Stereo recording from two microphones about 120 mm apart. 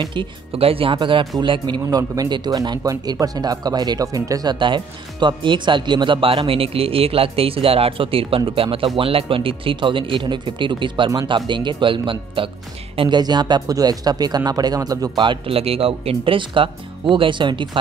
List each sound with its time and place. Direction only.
0.0 s speech: 40° right (ahead or behind)